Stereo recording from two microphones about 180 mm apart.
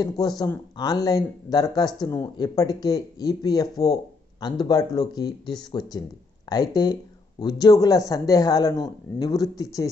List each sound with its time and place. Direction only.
0.0 s speech: 20° left (ahead or behind)